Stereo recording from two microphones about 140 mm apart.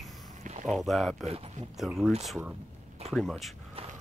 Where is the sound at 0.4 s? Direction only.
60° right (ahead or behind).